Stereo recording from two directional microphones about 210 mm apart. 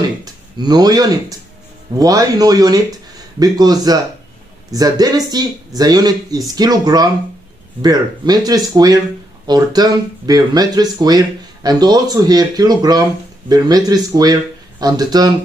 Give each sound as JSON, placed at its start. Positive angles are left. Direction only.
{"t": 0.2, "sound": "speech", "side_deg": -20}